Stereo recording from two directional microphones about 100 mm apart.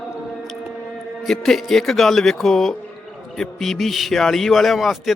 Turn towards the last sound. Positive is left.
turn(degrees=0)  # may be behind; listen again after turning